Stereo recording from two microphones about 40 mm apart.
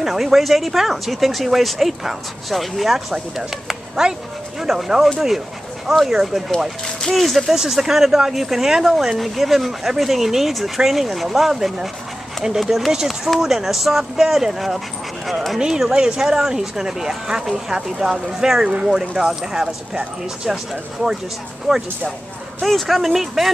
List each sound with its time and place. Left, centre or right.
0.0 s speech: centre
7.0 s speech: centre
7.5 s speech: centre
15.6 s speech: centre
21.7 s speech: centre